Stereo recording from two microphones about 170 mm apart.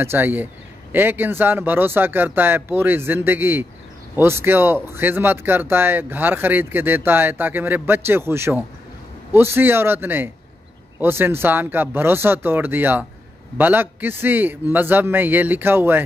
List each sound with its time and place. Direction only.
0.0 s speech: 15° right (ahead or behind)